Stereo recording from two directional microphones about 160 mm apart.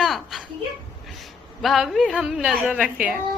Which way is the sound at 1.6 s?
Centre (ahead or behind).